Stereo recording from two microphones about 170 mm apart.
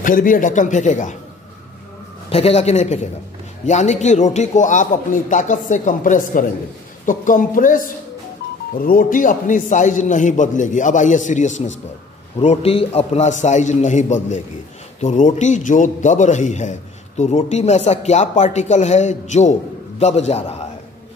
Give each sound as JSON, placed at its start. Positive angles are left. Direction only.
{"t": 0.0, "sound": "a man's voice", "side_deg": 50}
{"t": 2.2, "sound": "a man's voice", "side_deg": 35}